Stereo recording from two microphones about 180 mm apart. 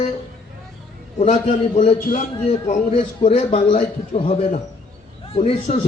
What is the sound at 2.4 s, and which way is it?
A man's voice, 35° left (ahead or behind).